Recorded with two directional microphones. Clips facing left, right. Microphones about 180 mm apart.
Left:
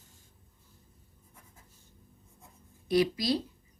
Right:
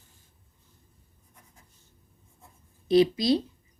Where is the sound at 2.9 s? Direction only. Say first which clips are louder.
Right 6 dB; 25° right (ahead or behind).